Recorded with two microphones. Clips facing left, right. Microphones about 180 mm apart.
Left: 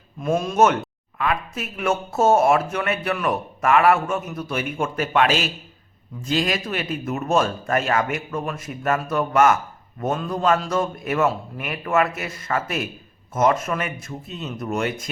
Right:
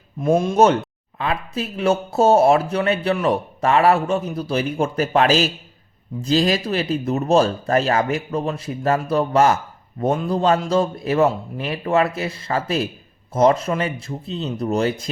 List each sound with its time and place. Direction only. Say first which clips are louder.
0.2 s a man's voice: right 3 dB; 25° right (ahead or behind)